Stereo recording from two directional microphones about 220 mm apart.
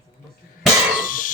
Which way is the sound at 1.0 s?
40° left (ahead or behind).